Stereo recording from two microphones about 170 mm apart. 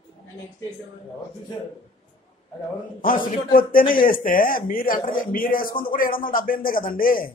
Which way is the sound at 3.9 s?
55° left (ahead or behind).